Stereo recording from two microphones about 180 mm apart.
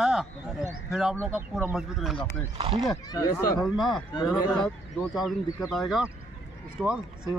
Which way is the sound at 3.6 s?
Centre (ahead or behind).